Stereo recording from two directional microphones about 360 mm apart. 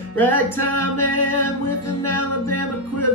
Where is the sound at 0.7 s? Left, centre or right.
Left.